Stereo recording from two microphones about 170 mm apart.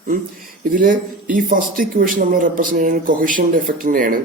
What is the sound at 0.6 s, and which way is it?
A man's voice, 55° right (ahead or behind).